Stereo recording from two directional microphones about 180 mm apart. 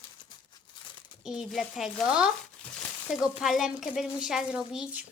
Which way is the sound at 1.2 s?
Centre (ahead or behind).